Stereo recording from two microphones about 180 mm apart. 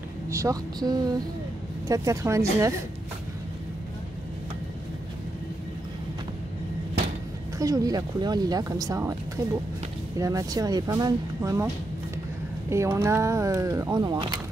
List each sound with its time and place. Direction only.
0.3 s speech: 15° right (ahead or behind)
7.5 s speech: 20° right (ahead or behind)